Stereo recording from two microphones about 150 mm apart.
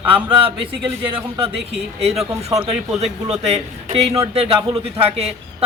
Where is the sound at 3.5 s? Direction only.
45° right (ahead or behind).